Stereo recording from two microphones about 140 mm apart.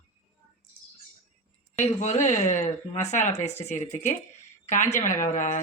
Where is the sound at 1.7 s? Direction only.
60° left (ahead or behind).